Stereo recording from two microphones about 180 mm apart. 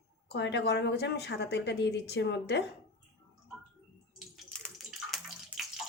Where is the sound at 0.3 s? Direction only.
70° left (ahead or behind).